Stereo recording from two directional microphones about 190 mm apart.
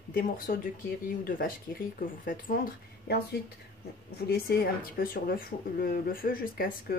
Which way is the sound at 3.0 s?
55° left (ahead or behind).